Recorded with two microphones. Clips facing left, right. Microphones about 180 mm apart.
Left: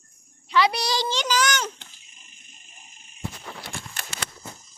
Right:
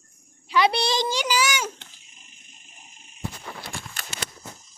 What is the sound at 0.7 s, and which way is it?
Child singing, 25° right (ahead or behind).